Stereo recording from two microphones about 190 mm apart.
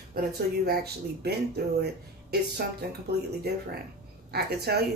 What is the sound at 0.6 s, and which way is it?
Speech, 55° right (ahead or behind).